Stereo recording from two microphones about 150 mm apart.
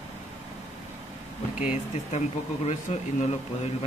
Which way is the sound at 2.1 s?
50° left (ahead or behind).